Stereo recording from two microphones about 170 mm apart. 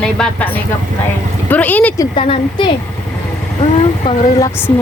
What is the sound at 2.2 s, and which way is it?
Speech, 35° left (ahead or behind).